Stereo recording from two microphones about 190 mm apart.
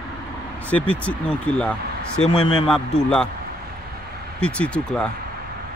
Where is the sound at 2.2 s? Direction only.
30° left (ahead or behind).